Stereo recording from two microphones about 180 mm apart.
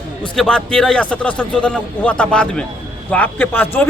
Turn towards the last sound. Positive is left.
turn(degrees=10)  # may be behind; listen again after turning